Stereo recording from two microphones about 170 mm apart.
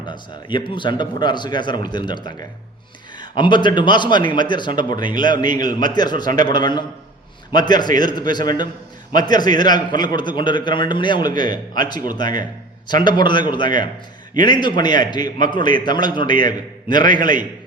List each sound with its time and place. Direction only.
0.0 s speech: 25° left (ahead or behind)